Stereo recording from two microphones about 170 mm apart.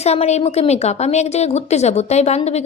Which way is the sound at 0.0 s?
40° left (ahead or behind).